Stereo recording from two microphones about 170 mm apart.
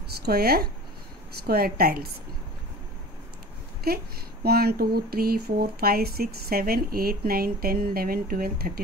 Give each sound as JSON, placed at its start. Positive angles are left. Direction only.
{"t": 0.3, "sound": "speech", "side_deg": -65}
{"t": 3.8, "sound": "speech", "side_deg": -65}